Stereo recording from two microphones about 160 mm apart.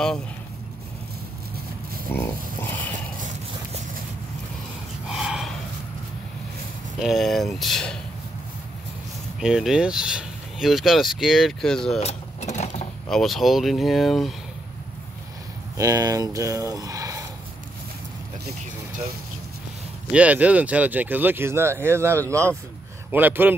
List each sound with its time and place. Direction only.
2.1 s speech: 15° left (ahead or behind)
5.0 s snort: 5° right (ahead or behind)
7.0 s speech: centre (ahead or behind)
9.4 s speech: 5° right (ahead or behind)
12.0 s vehicle: 40° left (ahead or behind)
13.1 s speech: centre (ahead or behind)
15.8 s speech: 20° right (ahead or behind)
20.1 s speech: 10° right (ahead or behind)